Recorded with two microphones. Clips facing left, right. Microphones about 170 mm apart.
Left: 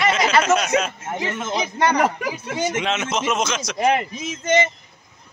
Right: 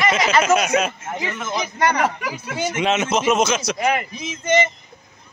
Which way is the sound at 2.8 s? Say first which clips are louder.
Right 4 dB; 5° right (ahead or behind).